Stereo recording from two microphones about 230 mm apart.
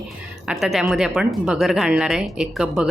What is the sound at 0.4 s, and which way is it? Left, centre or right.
A woman's voice, centre.